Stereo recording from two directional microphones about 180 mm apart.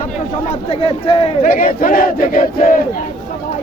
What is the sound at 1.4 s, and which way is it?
Battle cry, 50° left (ahead or behind).